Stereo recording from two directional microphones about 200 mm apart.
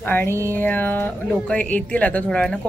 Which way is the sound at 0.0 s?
10° left (ahead or behind).